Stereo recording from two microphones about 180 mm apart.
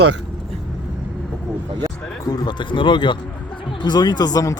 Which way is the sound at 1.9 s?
5° left (ahead or behind).